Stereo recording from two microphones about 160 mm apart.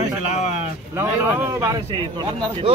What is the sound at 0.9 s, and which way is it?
A man's voice, 15° right (ahead or behind).